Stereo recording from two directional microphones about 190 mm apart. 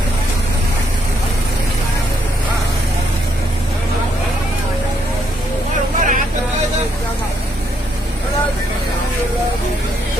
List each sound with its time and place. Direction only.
5.9 s vehicle: 45° right (ahead or behind)